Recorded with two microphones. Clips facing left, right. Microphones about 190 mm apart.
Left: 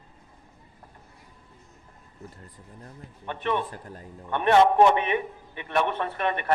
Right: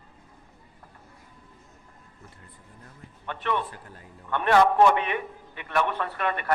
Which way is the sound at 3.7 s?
40° left (ahead or behind).